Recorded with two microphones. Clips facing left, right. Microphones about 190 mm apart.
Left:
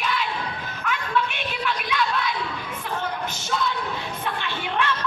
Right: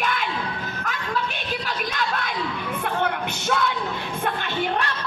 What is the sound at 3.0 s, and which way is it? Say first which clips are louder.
Music: right 4 dB; 60° right (ahead or behind).